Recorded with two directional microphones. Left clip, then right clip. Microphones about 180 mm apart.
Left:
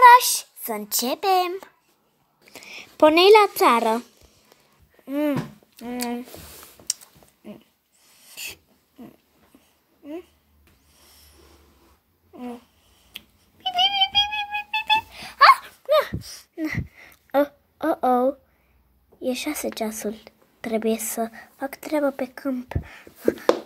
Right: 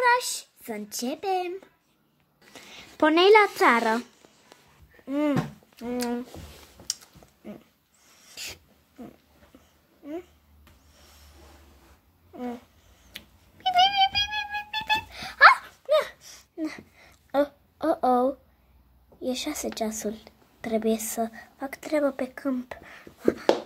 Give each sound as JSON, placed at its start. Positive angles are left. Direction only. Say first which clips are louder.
{"t": 0.0, "sound": "a child's voice", "louder": "left 11 dB", "side_deg": -5}
{"t": 2.5, "sound": "speech", "louder": "left 5 dB", "side_deg": 20}
{"t": 5.0, "sound": "a sound", "louder": "left 2 dB", "side_deg": 10}
{"t": 5.8, "sound": "speech", "louder": "even", "side_deg": 10}
{"t": 6.9, "sound": "a sound", "louder": "left 3 dB", "side_deg": 15}
{"t": 8.2, "sound": "sneeze", "louder": "left 3 dB", "side_deg": 10}
{"t": 13.1, "sound": "a sound", "louder": "left 3 dB", "side_deg": 10}
{"t": 14.3, "sound": "music", "louder": "left 4 dB", "side_deg": 5}
{"t": 19.2, "sound": "speech", "louder": "left 4 dB", "side_deg": 10}